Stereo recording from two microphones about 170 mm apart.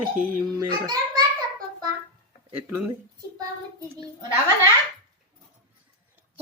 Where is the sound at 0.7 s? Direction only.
25° right (ahead or behind).